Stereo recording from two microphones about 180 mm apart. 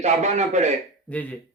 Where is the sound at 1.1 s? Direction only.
5° left (ahead or behind).